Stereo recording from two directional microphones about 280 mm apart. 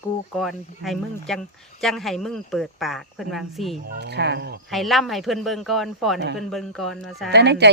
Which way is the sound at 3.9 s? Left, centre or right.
Right.